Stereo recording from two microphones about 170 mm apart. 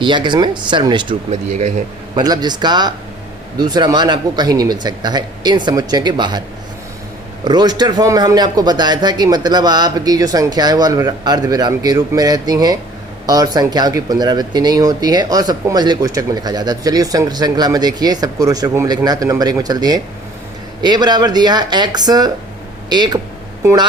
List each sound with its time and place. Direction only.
0.0 s speech: 25° right (ahead or behind)
1.3 s speech: 45° right (ahead or behind)
2.1 s speech: 25° right (ahead or behind)
7.4 s speech: 25° right (ahead or behind)